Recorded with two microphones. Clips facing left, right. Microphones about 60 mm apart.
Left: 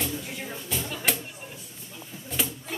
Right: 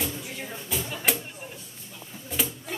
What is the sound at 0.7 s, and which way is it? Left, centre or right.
Music, centre.